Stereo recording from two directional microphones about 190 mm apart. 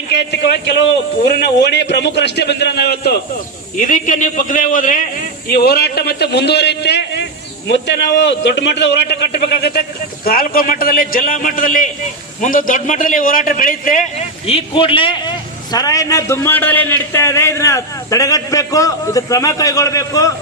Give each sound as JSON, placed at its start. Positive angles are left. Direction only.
{"t": 0.1, "sound": "a man's voice", "side_deg": 65}
{"t": 3.8, "sound": "a man's voice", "side_deg": 45}